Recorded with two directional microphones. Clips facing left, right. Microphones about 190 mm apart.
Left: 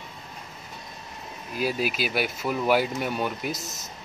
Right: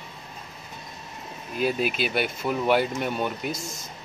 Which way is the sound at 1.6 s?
5° left (ahead or behind).